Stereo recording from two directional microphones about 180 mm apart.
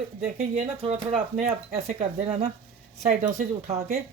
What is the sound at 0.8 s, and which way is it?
Speech, 40° right (ahead or behind).